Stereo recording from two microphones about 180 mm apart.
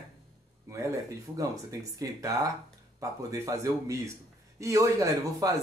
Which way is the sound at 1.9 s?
20° right (ahead or behind).